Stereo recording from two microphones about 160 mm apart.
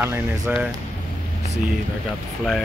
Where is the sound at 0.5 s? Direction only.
10° right (ahead or behind).